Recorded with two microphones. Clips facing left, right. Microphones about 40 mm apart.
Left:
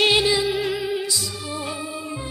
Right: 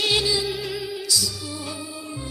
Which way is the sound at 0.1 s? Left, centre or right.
Left.